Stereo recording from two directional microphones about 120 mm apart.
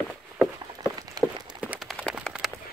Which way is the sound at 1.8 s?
5° left (ahead or behind).